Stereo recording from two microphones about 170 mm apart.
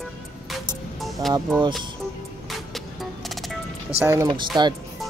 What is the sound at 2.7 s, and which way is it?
Music, centre (ahead or behind).